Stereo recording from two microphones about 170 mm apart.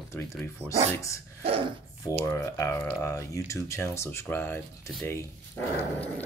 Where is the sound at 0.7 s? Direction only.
20° left (ahead or behind).